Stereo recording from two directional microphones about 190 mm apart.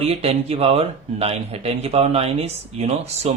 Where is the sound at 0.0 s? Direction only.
30° right (ahead or behind).